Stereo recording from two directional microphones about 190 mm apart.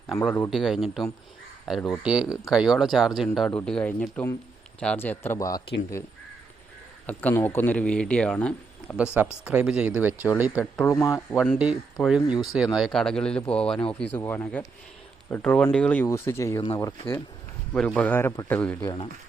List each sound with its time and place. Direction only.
0.1 s speech: 5° left (ahead or behind)
7.1 s speech: 10° left (ahead or behind)
9.1 s speech: 5° right (ahead or behind)
10.6 s speech: 10° left (ahead or behind)
11.1 s speech: centre (ahead or behind); by 16.9 s 25° left (ahead or behind)
17.7 s speech: 5° left (ahead or behind)
18.8 s speech: 20° left (ahead or behind)